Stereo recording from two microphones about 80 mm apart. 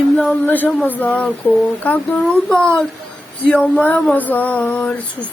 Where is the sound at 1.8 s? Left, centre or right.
Centre.